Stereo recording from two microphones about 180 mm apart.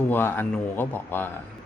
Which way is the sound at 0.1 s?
10° left (ahead or behind).